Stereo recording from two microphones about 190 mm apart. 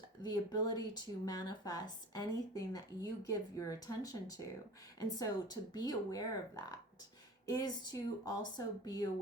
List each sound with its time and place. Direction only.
0.2 s speech: 20° left (ahead or behind)